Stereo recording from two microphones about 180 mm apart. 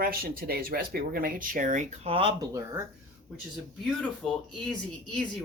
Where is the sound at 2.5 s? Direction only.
15° right (ahead or behind).